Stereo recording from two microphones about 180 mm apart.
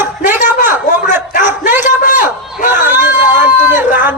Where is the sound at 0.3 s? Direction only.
10° right (ahead or behind).